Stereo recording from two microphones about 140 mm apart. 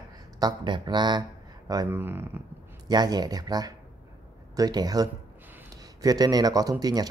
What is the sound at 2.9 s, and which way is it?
Speech, 30° right (ahead or behind).